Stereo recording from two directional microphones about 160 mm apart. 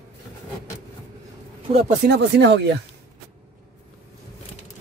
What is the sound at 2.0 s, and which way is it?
Speech, 90° right.